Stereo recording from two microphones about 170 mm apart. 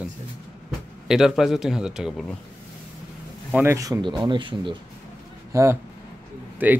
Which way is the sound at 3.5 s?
15° right (ahead or behind).